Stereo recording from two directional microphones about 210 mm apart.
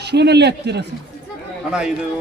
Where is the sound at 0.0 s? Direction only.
50° right (ahead or behind).